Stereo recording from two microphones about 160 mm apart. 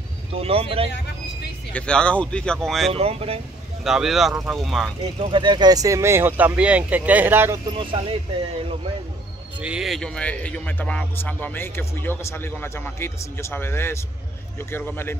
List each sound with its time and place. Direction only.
0.3 s speech: 35° right (ahead or behind)
1.7 s a man's voice: 5° left (ahead or behind)
2.9 s speech: 40° right (ahead or behind)
3.8 s speech: 5° right (ahead or behind)
5.2 s speech: 30° right (ahead or behind); by 7.6 s 15° right (ahead or behind)
7.7 s speech: 30° right (ahead or behind)
9.6 s a man's voice: 5° right (ahead or behind); by 15.1 s 10° left (ahead or behind)